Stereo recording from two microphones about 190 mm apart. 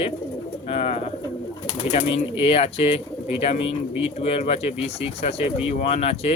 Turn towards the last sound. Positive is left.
turn(degrees=35)  # may be behind; listen again after turning